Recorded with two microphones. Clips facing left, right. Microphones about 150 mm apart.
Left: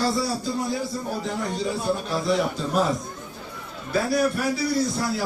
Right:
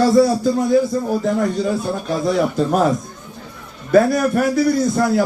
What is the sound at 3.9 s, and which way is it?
A man's voice, 50° right (ahead or behind).